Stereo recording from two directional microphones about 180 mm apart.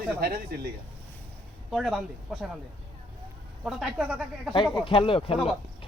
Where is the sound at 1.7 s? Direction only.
Centre (ahead or behind).